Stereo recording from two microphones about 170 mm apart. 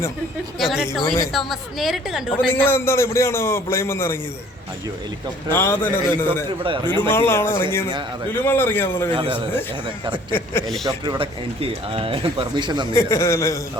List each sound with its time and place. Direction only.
0.6 s a woman's voice: centre (ahead or behind)
2.5 s a man's voice: 15° left (ahead or behind)
5.5 s a man's voice: 15° left (ahead or behind)
6.6 s a man's voice: 30° right (ahead or behind)
7.1 s a man's voice: 15° left (ahead or behind)
9.1 s a man's voice: 30° right (ahead or behind)
10.3 s a man's voice: 15° left (ahead or behind)
10.8 s speech: 25° right (ahead or behind)
12.9 s a man's voice: 15° left (ahead or behind)